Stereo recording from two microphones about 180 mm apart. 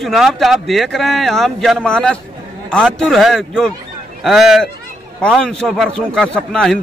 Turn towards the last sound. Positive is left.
turn(degrees=5)  # may be behind; listen again after turning